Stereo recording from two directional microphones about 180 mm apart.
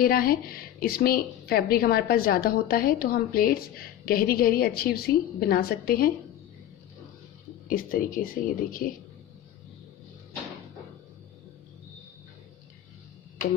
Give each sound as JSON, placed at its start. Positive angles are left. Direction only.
{"t": 0.0, "sound": "a woman's voice", "side_deg": 55}
{"t": 7.7, "sound": "speech", "side_deg": 50}